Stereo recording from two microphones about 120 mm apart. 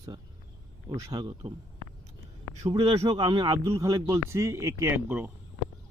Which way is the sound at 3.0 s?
40° right (ahead or behind).